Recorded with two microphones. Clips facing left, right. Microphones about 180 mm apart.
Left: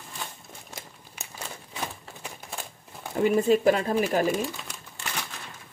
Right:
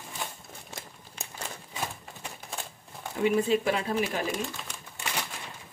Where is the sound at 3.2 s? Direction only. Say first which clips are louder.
Left 4 dB; 45° left (ahead or behind).